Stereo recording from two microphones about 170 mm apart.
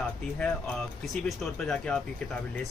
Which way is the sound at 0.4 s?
5° left (ahead or behind).